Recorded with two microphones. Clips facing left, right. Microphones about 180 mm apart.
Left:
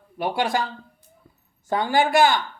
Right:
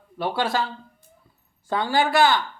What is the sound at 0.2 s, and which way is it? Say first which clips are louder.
Speech: left 1 dB; 15° left (ahead or behind).